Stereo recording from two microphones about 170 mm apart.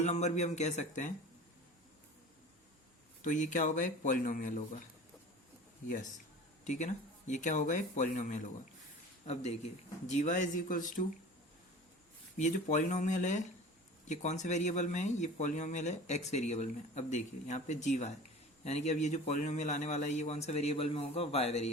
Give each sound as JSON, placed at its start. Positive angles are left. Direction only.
{"t": 0.0, "sound": "speech", "side_deg": 40}
{"t": 3.2, "sound": "speech", "side_deg": 45}
{"t": 6.7, "sound": "speech", "side_deg": 45}
{"t": 12.4, "sound": "a man's voice", "side_deg": 45}